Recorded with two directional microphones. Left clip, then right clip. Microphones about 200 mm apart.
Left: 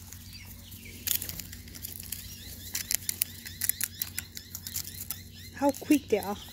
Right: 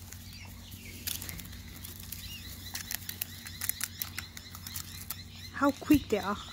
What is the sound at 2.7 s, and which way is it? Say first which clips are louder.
Camera: left 6 dB; 10° left (ahead or behind).